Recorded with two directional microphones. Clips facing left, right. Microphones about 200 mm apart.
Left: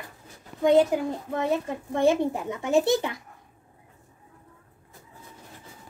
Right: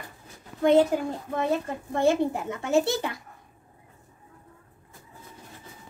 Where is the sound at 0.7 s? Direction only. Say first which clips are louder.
Even; 15° left (ahead or behind).